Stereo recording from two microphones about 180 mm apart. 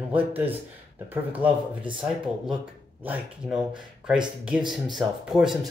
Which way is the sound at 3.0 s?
5° right (ahead or behind).